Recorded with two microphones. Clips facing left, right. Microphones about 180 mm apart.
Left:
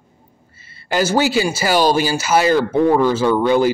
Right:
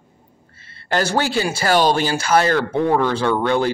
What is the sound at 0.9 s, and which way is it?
Speech, 5° left (ahead or behind).